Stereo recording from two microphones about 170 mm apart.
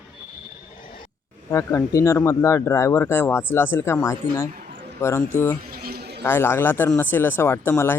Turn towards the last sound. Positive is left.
turn(degrees=15)  # may be behind; listen again after turning